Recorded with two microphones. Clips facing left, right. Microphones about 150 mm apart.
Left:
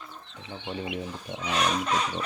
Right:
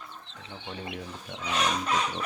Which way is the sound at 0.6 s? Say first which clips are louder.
Left 5 dB; 15° left (ahead or behind).